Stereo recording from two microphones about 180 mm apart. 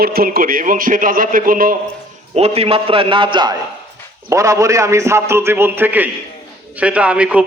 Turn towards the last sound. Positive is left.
turn(degrees=-5)  # may be behind; listen again after turning